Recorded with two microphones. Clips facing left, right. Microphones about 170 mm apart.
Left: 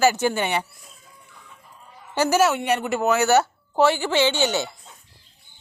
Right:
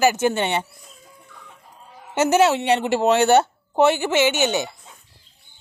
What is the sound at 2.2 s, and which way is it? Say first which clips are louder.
A woman's voice: right 2 dB; 25° right (ahead or behind).